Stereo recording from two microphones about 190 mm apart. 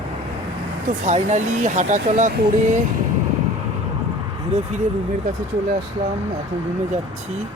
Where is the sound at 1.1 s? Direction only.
40° right (ahead or behind).